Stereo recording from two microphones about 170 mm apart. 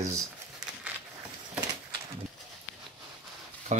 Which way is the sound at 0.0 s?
15° right (ahead or behind).